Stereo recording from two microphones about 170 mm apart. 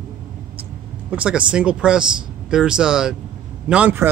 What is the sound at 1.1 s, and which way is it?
Speech, 5° right (ahead or behind).